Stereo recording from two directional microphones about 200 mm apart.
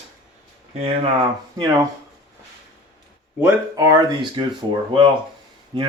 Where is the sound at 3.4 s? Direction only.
15° right (ahead or behind).